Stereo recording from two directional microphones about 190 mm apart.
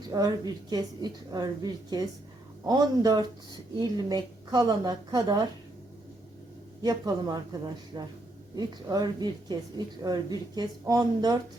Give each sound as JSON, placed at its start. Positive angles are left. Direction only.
{"t": 0.1, "sound": "speech", "side_deg": -20}
{"t": 6.8, "sound": "speech", "side_deg": -20}